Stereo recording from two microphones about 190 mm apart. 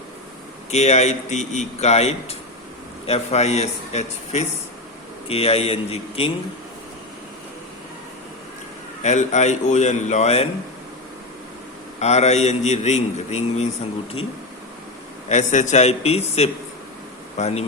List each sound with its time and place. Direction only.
0.7 s a man's voice: 35° left (ahead or behind)
9.0 s a man's voice: 35° left (ahead or behind)
11.9 s a man's voice: 35° left (ahead or behind)
15.3 s a man's voice: 40° left (ahead or behind)